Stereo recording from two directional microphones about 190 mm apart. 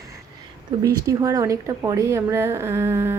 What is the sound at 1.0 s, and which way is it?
A woman's voice, 20° right (ahead or behind).